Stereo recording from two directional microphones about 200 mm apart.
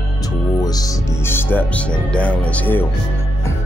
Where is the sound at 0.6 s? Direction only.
20° left (ahead or behind).